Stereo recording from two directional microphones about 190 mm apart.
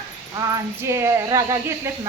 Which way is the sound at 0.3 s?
15° right (ahead or behind).